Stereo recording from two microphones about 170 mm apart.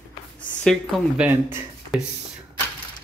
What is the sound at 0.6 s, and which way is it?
Speech, 5° left (ahead or behind).